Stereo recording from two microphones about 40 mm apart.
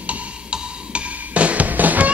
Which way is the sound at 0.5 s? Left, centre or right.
Right.